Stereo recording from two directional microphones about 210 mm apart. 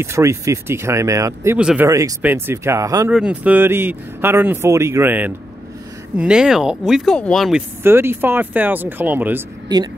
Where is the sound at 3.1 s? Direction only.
5° right (ahead or behind).